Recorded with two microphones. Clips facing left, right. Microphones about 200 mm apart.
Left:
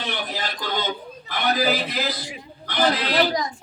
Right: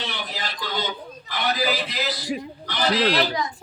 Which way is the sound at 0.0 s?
50° left (ahead or behind).